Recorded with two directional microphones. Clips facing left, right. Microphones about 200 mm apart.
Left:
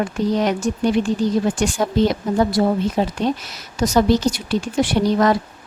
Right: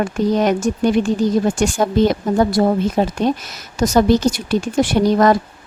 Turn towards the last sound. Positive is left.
turn(degrees=-45)  # may be behind; listen again after turning